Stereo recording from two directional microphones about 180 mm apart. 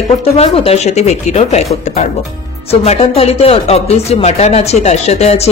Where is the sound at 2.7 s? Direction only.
35° left (ahead or behind).